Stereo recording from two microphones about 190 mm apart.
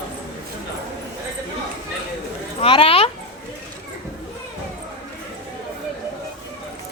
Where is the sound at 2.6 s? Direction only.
30° left (ahead or behind).